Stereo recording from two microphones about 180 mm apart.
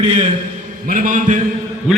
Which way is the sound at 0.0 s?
25° right (ahead or behind).